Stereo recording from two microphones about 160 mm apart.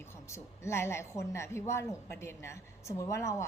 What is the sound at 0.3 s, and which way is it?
A woman's voice, 15° left (ahead or behind).